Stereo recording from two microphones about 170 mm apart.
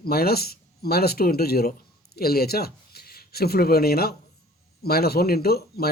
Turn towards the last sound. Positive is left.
turn(degrees=65)  # may be behind; listen again after turning